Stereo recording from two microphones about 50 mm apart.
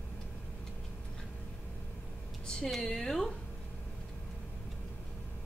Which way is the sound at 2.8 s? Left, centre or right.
Centre.